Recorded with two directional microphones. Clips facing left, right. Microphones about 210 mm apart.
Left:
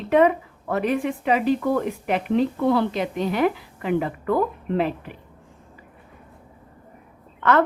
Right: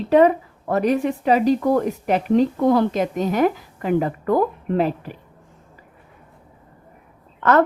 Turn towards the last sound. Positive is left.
turn(degrees=-40)  # may be behind; listen again after turning